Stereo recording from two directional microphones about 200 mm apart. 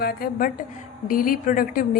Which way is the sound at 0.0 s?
50° left (ahead or behind).